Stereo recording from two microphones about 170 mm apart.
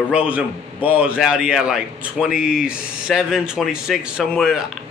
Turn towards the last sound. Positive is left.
turn(degrees=-5)  # may be behind; listen again after turning